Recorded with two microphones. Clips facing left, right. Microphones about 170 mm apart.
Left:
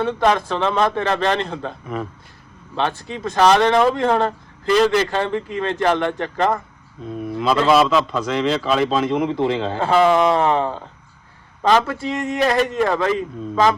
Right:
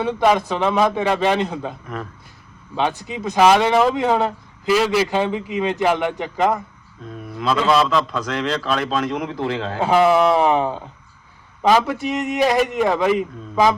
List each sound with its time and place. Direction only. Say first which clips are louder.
0.0 s speech: right 1 dB; 10° right (ahead or behind)
2.7 s a man's voice: right 1 dB; 10° right (ahead or behind)